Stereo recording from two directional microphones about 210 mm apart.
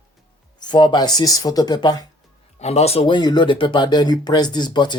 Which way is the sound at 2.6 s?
30° left (ahead or behind).